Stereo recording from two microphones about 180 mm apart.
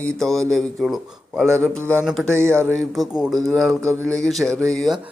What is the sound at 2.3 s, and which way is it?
Speech, 15° right (ahead or behind).